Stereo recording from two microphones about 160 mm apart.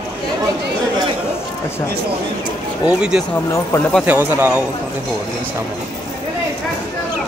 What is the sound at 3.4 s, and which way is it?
Speech, 15° left (ahead or behind).